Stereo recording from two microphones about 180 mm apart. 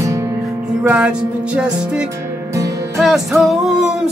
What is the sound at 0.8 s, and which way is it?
Music, 5° right (ahead or behind).